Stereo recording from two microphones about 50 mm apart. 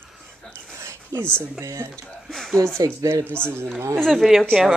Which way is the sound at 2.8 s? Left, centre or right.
Right.